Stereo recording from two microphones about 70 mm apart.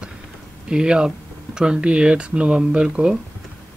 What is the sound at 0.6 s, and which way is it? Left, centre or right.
Speech, centre.